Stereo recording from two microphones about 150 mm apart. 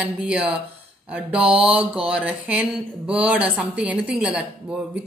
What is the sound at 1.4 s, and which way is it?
Mantra, 40° right (ahead or behind).